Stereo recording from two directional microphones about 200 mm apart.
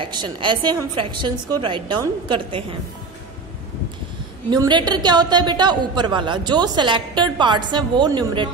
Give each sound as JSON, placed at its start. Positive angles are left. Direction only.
{"t": 0.0, "sound": "a woman's voice", "side_deg": -25}
{"t": 4.5, "sound": "a woman's voice", "side_deg": -20}